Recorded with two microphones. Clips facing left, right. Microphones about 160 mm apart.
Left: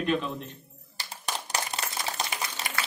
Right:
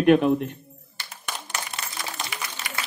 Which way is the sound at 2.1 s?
40° left (ahead or behind).